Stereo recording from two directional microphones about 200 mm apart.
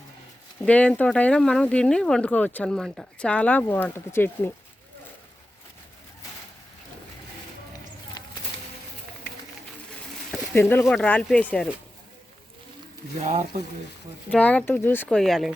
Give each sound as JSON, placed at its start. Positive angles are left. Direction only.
{"t": 0.6, "sound": "speech", "side_deg": 5}
{"t": 8.2, "sound": "a sound", "side_deg": 20}
{"t": 10.3, "sound": "speech", "side_deg": 10}
{"t": 14.3, "sound": "speech", "side_deg": 5}